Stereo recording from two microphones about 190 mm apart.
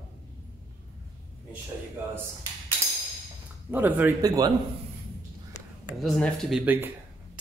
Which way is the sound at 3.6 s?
10° right (ahead or behind).